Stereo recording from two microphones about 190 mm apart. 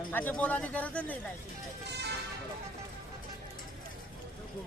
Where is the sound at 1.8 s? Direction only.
60° right (ahead or behind).